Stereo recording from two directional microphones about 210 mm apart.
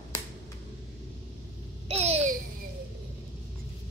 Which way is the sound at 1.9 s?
30° right (ahead or behind).